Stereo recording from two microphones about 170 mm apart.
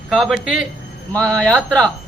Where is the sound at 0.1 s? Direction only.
Centre (ahead or behind).